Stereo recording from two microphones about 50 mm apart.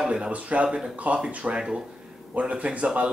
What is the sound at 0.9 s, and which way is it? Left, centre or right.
Speech, right.